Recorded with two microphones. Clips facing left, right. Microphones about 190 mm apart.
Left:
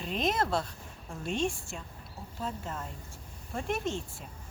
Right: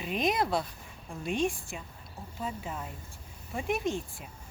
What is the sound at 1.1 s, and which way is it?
A woman's voice, centre (ahead or behind).